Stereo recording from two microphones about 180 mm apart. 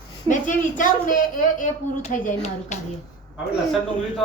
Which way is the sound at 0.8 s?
50° left (ahead or behind).